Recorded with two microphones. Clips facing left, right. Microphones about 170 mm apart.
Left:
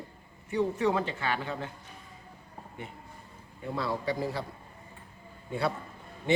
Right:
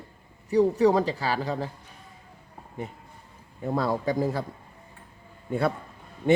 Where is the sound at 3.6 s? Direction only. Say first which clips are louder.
Right 6 dB; 45° right (ahead or behind).